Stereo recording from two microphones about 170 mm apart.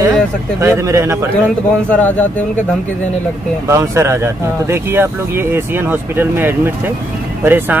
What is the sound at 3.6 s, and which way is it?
Speech, 15° right (ahead or behind).